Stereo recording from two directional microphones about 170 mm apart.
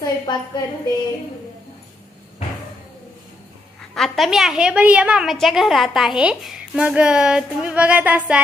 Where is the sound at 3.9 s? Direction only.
Centre (ahead or behind).